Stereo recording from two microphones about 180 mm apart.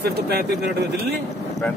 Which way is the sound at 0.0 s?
60° right (ahead or behind).